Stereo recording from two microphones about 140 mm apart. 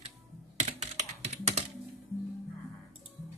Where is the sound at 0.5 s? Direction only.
55° right (ahead or behind).